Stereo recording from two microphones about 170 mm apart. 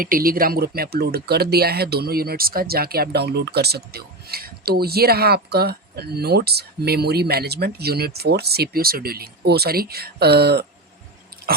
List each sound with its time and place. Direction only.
0.0 s speech: 55° right (ahead or behind)